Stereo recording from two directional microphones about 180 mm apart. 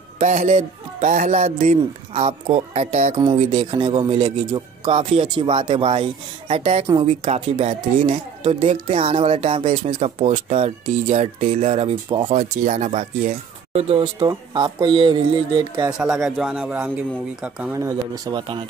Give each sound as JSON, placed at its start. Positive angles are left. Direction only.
{"t": 0.2, "sound": "speech", "side_deg": -40}
{"t": 12.4, "sound": "speech", "side_deg": -40}
{"t": 14.2, "sound": "speech", "side_deg": -25}
{"t": 15.8, "sound": "speech", "side_deg": -5}
{"t": 17.7, "sound": "speech", "side_deg": -20}